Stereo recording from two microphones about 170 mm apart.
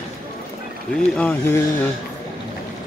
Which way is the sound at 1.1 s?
10° left (ahead or behind).